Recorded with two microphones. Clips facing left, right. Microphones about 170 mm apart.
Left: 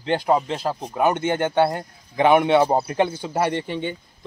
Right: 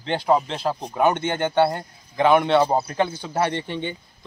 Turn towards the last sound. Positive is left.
turn(degrees=5)  # may be behind; listen again after turning